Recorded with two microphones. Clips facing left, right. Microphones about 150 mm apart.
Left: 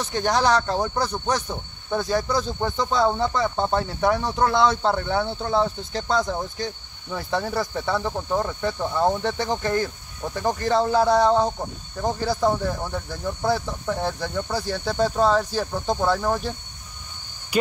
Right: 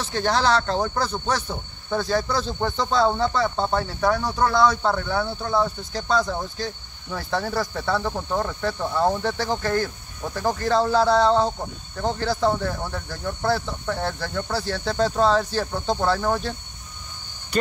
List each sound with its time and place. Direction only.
0.0 s speech: 15° left (ahead or behind)
8.3 s speech: 5° left (ahead or behind)
9.2 s speech: 20° left (ahead or behind)